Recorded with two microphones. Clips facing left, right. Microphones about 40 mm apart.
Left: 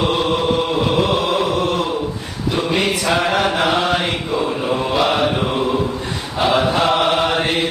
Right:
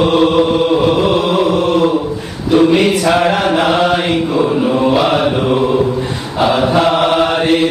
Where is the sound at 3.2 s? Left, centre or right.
Right.